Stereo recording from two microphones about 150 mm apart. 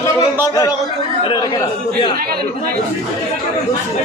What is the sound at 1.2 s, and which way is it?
Speech, 35° left (ahead or behind).